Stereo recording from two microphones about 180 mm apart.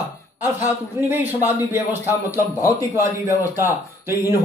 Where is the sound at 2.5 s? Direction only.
20° left (ahead or behind).